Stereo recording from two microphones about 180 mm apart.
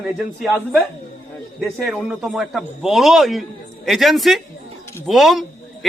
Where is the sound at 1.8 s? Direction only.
Centre (ahead or behind).